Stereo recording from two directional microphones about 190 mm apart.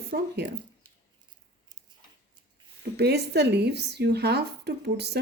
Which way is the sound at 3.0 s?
60° right (ahead or behind).